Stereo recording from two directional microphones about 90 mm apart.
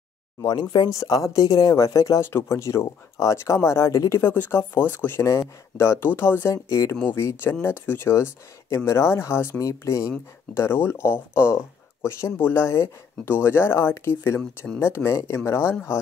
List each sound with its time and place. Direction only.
0.4 s speech: 55° left (ahead or behind)
0.8 s speech: 40° left (ahead or behind)
4.2 s speech: 25° left (ahead or behind)
9.6 s speech: 40° left (ahead or behind)